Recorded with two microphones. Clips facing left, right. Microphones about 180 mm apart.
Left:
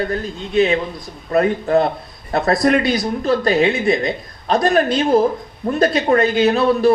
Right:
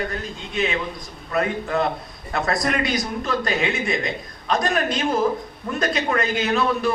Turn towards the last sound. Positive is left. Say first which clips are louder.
# left 7 dB
turn(degrees=35)  # may be behind; listen again after turning